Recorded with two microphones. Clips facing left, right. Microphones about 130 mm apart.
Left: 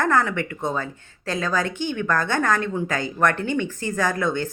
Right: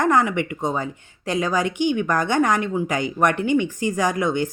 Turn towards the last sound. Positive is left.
turn(degrees=-15)  # may be behind; listen again after turning